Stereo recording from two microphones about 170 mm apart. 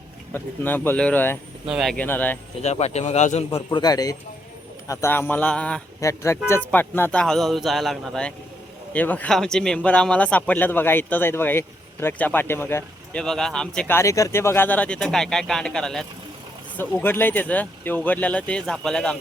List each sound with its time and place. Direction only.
0.3 s speech: 10° left (ahead or behind)
1.6 s speech: centre (ahead or behind)
2.6 s a man's voice: 40° left (ahead or behind)
3.7 s a man's voice: 20° left (ahead or behind); by 5.8 s 5° left (ahead or behind)
6.0 s a man's voice: 15° left (ahead or behind)